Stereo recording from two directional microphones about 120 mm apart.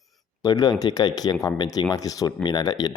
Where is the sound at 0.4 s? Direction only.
30° left (ahead or behind).